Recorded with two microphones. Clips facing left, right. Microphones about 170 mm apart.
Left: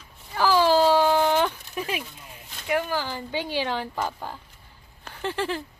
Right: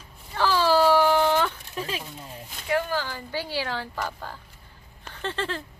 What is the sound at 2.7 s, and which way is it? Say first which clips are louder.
Speech: even; 15° left (ahead or behind).